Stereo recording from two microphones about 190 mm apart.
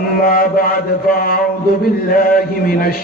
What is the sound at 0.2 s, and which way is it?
A man's voice, 50° left (ahead or behind).